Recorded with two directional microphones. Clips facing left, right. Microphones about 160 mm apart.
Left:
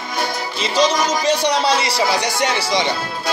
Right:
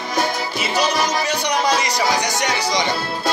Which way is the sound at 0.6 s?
10° right (ahead or behind).